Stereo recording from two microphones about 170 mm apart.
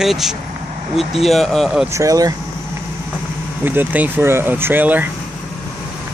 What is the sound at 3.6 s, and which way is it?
Speech, 10° right (ahead or behind).